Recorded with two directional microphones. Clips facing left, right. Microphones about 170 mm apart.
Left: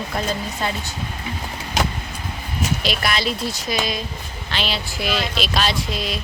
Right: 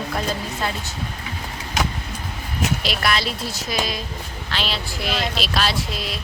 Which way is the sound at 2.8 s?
Centre (ahead or behind).